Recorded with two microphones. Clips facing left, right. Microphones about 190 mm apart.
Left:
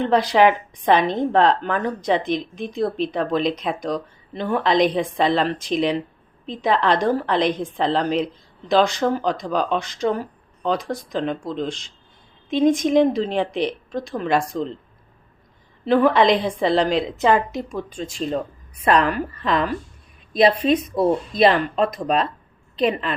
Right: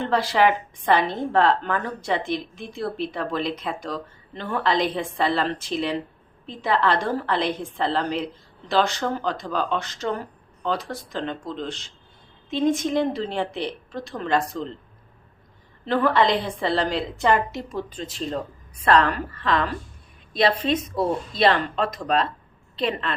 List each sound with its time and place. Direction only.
0.0 s a woman's voice: 15° left (ahead or behind)
15.9 s a woman's voice: 15° left (ahead or behind)